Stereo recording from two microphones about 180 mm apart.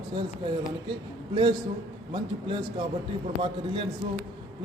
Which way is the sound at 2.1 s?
25° right (ahead or behind).